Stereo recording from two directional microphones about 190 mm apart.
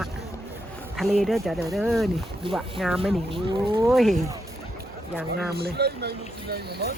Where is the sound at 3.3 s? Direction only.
25° right (ahead or behind).